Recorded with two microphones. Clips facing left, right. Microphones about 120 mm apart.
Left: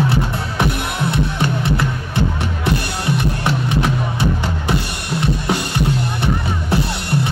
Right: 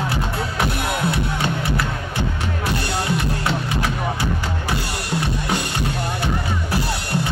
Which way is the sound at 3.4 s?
25° left (ahead or behind).